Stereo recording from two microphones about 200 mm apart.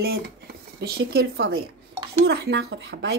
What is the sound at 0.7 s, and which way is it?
A woman's voice, 55° right (ahead or behind).